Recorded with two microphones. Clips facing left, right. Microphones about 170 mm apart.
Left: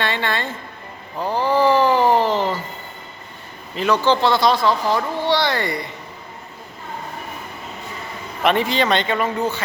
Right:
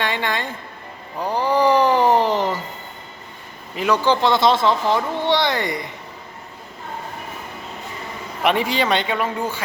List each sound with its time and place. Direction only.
0.0 s speech: 15° right (ahead or behind)
1.2 s a sound: 15° right (ahead or behind)
3.8 s speech: 10° right (ahead or behind)
8.4 s speech: 10° right (ahead or behind)